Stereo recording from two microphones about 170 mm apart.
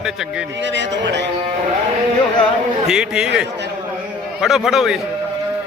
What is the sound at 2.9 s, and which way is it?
Speech, 5° right (ahead or behind).